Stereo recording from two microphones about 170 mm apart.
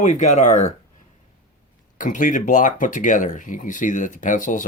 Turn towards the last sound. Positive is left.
turn(degrees=50)  # may be behind; listen again after turning